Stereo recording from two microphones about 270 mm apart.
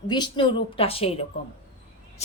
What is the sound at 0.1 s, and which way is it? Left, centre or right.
A woman's voice, centre.